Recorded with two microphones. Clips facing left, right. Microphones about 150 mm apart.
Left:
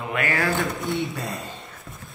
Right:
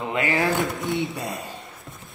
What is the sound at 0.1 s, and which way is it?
Speech, 20° right (ahead or behind).